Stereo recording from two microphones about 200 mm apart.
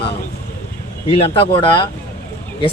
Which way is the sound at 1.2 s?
30° left (ahead or behind).